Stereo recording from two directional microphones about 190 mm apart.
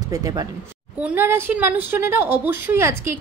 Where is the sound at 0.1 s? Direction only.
20° right (ahead or behind).